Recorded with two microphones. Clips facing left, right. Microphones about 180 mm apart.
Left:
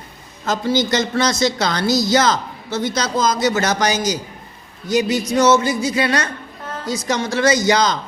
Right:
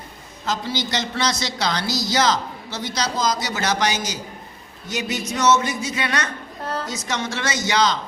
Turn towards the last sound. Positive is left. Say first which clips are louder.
# left 5 dB
turn(degrees=40)  # may be behind; listen again after turning